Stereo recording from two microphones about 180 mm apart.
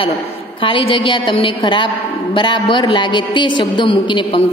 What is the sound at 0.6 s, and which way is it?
Music, 30° left (ahead or behind).